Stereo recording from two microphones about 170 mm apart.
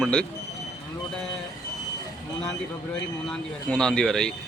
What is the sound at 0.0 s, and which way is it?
Speech, 5° left (ahead or behind).